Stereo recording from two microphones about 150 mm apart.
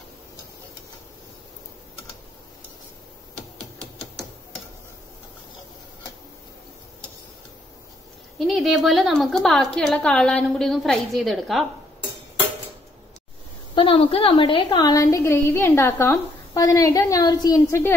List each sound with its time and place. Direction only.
8.4 s a woman's voice: centre (ahead or behind)
13.7 s a woman's voice: 35° left (ahead or behind); by 17.9 s 20° left (ahead or behind)